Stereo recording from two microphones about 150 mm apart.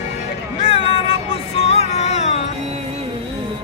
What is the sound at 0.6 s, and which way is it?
Music, 40° left (ahead or behind).